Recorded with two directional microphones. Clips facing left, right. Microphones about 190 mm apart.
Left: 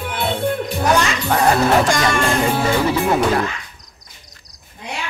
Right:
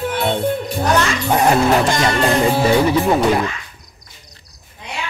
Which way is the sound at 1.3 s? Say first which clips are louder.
Right 1 dB; 20° right (ahead or behind).